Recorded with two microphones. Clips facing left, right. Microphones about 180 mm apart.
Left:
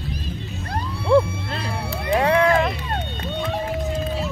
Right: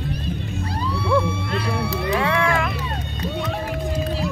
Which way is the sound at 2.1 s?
40° left (ahead or behind).